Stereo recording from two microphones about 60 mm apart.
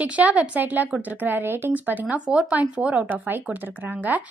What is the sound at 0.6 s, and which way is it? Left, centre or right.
A woman's voice, right.